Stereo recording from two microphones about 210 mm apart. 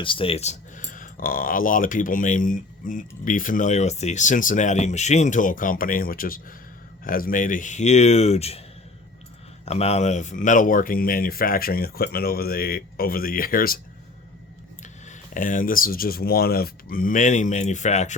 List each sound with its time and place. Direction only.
0.0 s speech: 25° left (ahead or behind)
9.6 s speech: 30° left (ahead or behind)
14.8 s speech: 35° left (ahead or behind)